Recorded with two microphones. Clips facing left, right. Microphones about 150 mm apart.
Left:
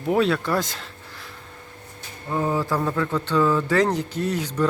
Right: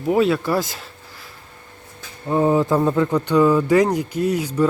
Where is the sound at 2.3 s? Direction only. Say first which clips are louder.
Right 7 dB; 20° right (ahead or behind).